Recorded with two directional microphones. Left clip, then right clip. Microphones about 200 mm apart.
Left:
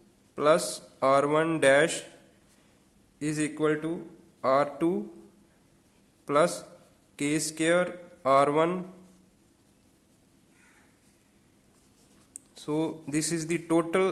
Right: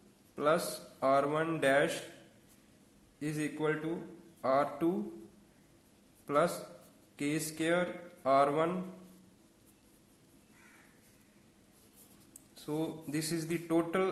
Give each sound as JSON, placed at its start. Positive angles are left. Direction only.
{"t": 0.3, "sound": "a man's voice", "side_deg": 40}
{"t": 3.2, "sound": "a man's voice", "side_deg": 40}
{"t": 6.2, "sound": "a man's voice", "side_deg": 40}
{"t": 12.5, "sound": "a man's voice", "side_deg": 35}